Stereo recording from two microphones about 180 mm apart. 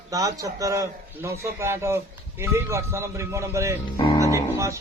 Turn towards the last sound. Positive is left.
turn(degrees=-15)  # may be behind; listen again after turning